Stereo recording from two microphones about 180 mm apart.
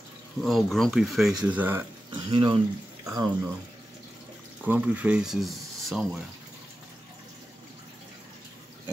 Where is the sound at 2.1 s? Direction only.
25° right (ahead or behind).